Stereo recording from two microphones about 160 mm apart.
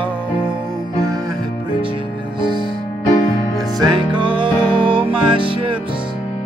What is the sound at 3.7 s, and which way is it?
Music, 25° right (ahead or behind).